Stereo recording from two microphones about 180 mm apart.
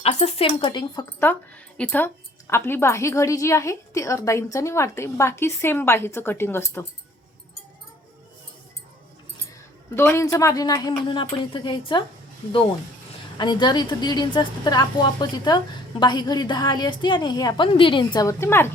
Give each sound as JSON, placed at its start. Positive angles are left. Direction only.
{"t": 0.0, "sound": "speech", "side_deg": 35}
{"t": 1.2, "sound": "a woman's voice", "side_deg": 10}
{"t": 9.9, "sound": "a woman's voice", "side_deg": 15}
{"t": 13.3, "sound": "a woman's voice", "side_deg": 25}